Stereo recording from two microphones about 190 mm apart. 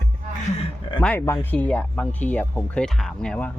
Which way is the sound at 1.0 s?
10° left (ahead or behind).